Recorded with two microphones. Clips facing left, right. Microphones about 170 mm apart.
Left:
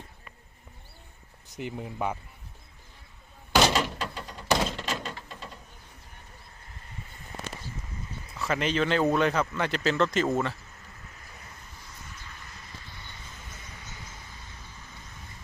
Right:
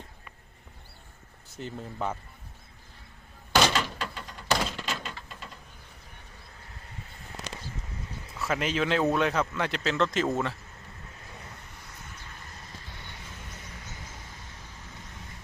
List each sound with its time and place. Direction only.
1.5 s speech: 15° left (ahead or behind)
3.5 s door: 15° left (ahead or behind)
8.4 s speech: centre (ahead or behind)